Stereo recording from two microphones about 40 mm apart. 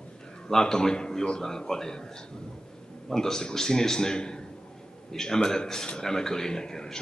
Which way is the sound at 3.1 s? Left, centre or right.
Centre.